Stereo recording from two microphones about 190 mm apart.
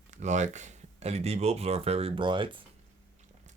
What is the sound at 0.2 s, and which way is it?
Speech, 40° right (ahead or behind).